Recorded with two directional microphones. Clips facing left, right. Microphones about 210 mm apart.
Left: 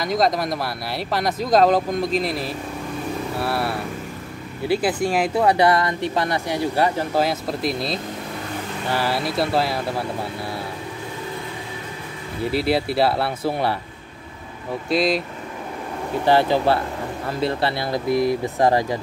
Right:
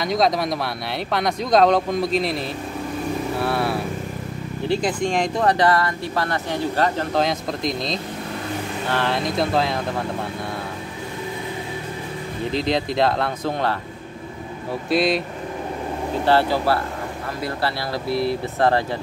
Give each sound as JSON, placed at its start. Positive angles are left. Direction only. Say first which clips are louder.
{"t": 0.0, "sound": "speech", "louder": "even", "side_deg": 0}
{"t": 12.4, "sound": "speech", "louder": "left 2 dB", "side_deg": 10}
{"t": 14.9, "sound": "speech", "louder": "even", "side_deg": 0}
{"t": 16.3, "sound": "speech", "louder": "left 2 dB", "side_deg": 15}